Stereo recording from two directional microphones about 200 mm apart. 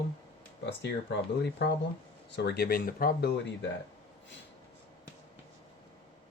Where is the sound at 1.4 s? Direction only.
55° left (ahead or behind).